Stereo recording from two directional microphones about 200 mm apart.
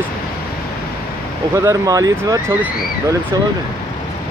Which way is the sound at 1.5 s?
15° right (ahead or behind).